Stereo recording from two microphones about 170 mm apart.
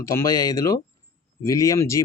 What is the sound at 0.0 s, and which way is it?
Speech, 15° left (ahead or behind).